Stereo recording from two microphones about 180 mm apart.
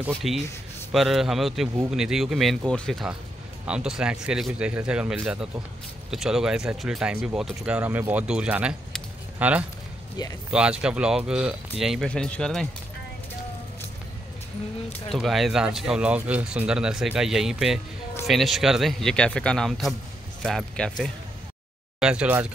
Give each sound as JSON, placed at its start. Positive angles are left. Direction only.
{"t": 0.1, "sound": "speech", "side_deg": 0}
{"t": 15.0, "sound": "speech", "side_deg": 0}
{"t": 22.0, "sound": "speech", "side_deg": -5}